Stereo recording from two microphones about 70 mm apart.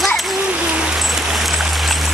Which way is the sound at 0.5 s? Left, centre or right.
Centre.